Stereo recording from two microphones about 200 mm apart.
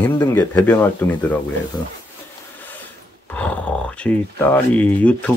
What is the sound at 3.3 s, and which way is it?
Speech, 5° left (ahead or behind).